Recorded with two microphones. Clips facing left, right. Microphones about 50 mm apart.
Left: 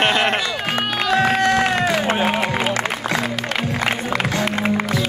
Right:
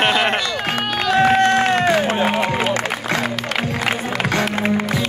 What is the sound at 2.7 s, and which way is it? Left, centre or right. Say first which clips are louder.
Music: even; right.